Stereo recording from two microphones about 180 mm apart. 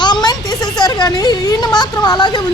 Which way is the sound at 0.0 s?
25° left (ahead or behind).